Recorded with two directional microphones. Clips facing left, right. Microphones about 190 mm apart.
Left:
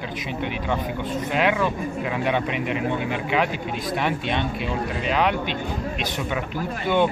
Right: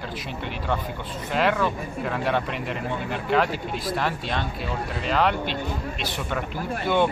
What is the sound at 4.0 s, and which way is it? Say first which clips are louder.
Speech: left 6 dB; 20° left (ahead or behind).